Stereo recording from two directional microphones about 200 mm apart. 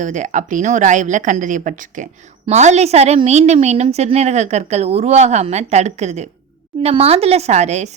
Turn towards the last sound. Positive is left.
turn(degrees=-35)  # may be behind; listen again after turning